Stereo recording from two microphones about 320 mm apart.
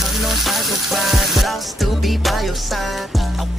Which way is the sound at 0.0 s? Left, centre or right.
Centre.